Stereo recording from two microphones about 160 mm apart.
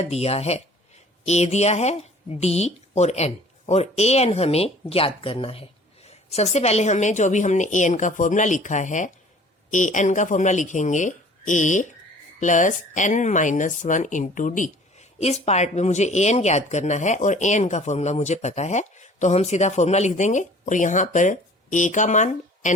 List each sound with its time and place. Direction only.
0.0 s speech: 40° left (ahead or behind)